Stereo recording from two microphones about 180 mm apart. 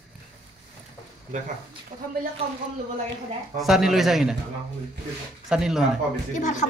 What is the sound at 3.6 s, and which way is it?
Speech, centre (ahead or behind).